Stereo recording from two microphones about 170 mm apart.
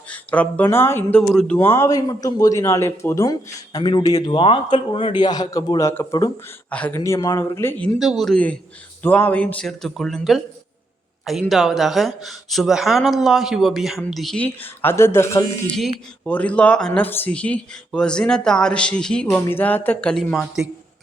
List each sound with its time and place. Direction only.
0.1 s speech: 10° left (ahead or behind)
1.5 s speech: 15° left (ahead or behind)
6.7 s speech: 10° left (ahead or behind)
7.9 s speech: centre (ahead or behind)